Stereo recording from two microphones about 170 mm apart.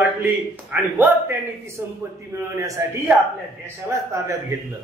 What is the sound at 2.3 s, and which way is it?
Speech, 20° right (ahead or behind).